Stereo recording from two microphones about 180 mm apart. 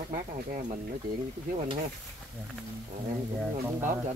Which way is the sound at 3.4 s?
15° right (ahead or behind).